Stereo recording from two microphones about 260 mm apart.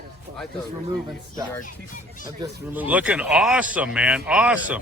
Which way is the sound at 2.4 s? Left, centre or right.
Centre.